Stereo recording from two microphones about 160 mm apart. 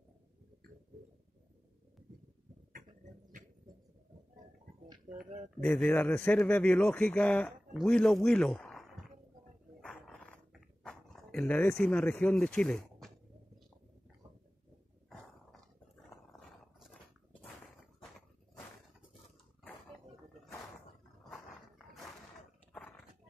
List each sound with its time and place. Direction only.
5.6 s a man's voice: 5° left (ahead or behind)
9.8 s dog: 5° left (ahead or behind)
16.3 s a sound: centre (ahead or behind)
22.7 s dog: 10° left (ahead or behind)